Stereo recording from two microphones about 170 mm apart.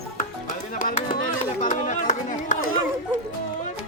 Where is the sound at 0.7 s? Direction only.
50° left (ahead or behind).